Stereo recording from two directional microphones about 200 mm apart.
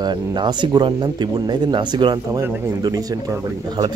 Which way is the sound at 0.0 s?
20° right (ahead or behind).